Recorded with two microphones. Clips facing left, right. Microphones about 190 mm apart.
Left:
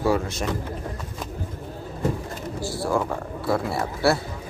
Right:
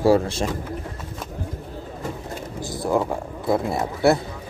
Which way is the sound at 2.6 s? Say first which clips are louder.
Right 2 dB; 20° right (ahead or behind).